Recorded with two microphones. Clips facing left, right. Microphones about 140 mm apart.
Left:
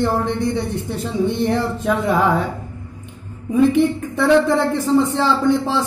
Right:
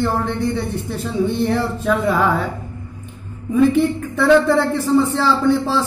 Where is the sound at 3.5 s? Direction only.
15° left (ahead or behind).